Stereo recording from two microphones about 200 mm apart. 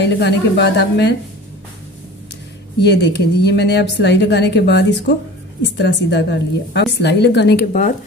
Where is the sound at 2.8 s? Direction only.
55° left (ahead or behind).